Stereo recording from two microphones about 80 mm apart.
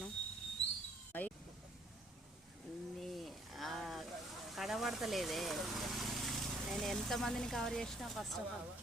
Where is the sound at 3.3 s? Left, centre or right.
Centre.